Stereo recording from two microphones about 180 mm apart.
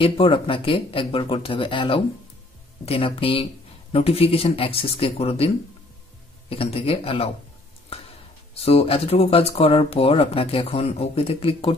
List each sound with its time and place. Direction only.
0.0 s speech: 30° left (ahead or behind)
6.5 s speech: 30° left (ahead or behind)
8.5 s speech: 35° left (ahead or behind)